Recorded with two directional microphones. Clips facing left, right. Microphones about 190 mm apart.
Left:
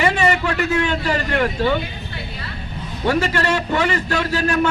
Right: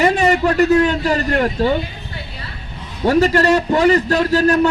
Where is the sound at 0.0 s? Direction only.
40° right (ahead or behind).